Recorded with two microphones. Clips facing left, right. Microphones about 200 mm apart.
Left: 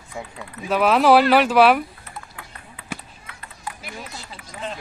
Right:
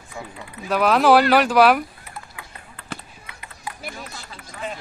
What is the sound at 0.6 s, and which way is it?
Speech, 5° left (ahead or behind).